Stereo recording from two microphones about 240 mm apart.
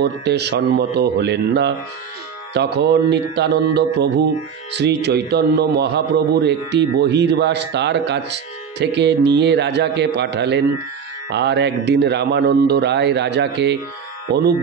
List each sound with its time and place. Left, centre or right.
0.0 s speech: right